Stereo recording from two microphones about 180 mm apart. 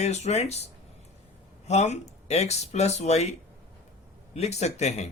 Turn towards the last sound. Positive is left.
turn(degrees=40)  # may be behind; listen again after turning